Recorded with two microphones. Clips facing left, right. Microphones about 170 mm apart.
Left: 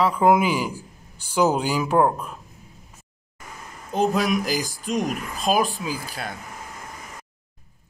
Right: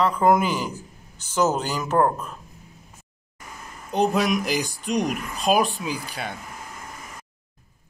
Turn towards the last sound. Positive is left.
turn(degrees=0)  # may be behind; listen again after turning